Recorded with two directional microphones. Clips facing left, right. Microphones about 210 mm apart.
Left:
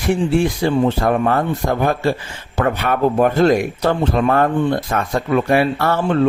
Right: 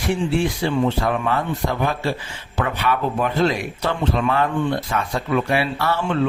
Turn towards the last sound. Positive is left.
turn(degrees=45)  # may be behind; listen again after turning